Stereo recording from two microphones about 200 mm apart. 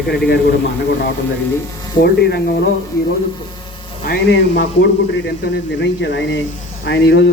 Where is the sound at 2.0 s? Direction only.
55° left (ahead or behind).